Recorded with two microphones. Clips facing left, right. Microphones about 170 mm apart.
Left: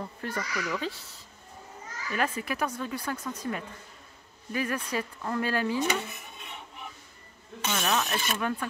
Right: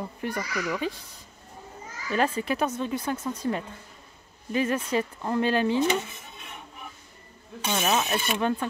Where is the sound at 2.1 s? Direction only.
30° right (ahead or behind).